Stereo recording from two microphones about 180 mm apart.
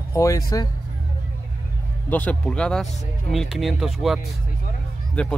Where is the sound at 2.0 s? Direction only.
10° left (ahead or behind).